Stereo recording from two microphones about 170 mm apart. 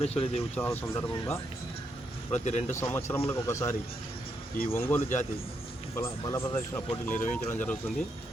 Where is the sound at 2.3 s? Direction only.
45° left (ahead or behind).